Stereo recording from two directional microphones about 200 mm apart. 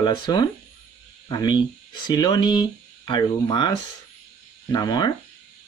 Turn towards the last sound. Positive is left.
turn(degrees=20)  # may be behind; listen again after turning